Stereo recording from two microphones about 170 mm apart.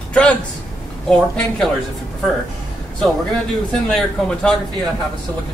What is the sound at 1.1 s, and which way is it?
Speech, 5° left (ahead or behind).